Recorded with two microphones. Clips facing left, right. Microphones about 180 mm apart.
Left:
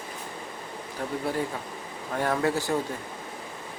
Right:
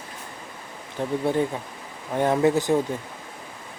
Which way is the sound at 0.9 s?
25° right (ahead or behind).